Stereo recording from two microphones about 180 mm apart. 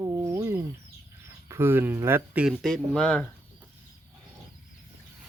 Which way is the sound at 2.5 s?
5° left (ahead or behind).